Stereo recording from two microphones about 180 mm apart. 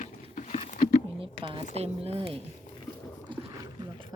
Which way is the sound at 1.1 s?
30° right (ahead or behind).